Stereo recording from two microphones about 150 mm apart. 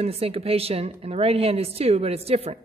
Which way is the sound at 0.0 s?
40° right (ahead or behind).